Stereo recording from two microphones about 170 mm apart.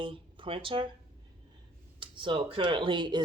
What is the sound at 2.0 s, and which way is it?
Speech, 30° right (ahead or behind).